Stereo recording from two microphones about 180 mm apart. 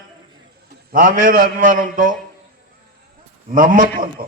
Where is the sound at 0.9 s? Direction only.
50° right (ahead or behind).